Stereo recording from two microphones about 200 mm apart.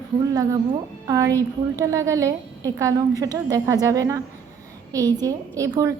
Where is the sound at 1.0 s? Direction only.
15° right (ahead or behind).